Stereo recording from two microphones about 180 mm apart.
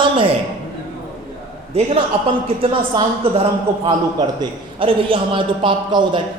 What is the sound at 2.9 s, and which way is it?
Speech, 25° right (ahead or behind).